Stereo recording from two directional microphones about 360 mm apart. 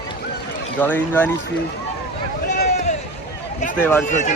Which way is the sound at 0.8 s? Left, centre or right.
Centre.